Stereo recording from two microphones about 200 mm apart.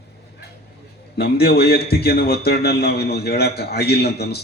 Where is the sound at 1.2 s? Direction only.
50° left (ahead or behind).